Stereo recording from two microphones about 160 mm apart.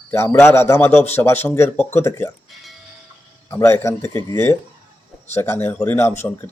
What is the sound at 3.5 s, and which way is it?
A man's voice, 15° left (ahead or behind).